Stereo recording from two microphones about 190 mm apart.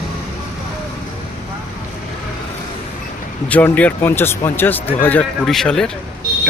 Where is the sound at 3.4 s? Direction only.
10° left (ahead or behind).